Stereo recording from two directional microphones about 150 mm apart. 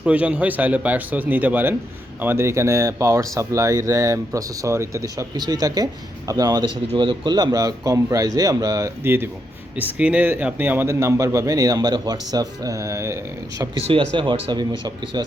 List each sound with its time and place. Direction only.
0.0 s a man's voice: 10° right (ahead or behind)
14.1 s speech: 35° right (ahead or behind)